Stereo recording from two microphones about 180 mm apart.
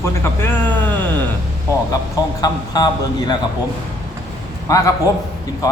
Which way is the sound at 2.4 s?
20° left (ahead or behind).